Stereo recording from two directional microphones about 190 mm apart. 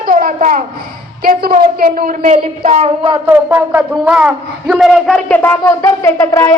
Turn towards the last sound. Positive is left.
turn(degrees=15)  # may be behind; listen again after turning